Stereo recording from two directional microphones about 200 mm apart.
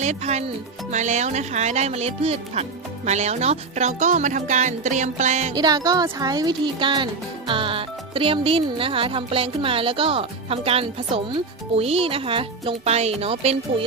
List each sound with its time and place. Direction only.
0.0 s speech: 35° right (ahead or behind)
5.5 s speech: 20° right (ahead or behind)